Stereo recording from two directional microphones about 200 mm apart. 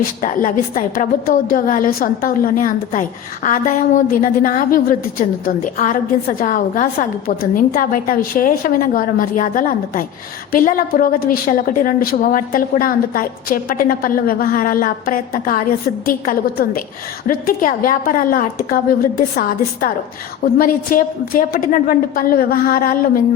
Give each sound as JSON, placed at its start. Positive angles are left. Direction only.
{"t": 0.2, "sound": "a woman's voice", "side_deg": 40}